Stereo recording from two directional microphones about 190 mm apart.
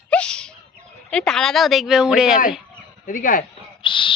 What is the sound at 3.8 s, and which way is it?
Owl, 25° left (ahead or behind).